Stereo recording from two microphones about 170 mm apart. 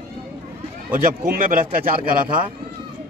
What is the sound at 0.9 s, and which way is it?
Speech, 55° right (ahead or behind).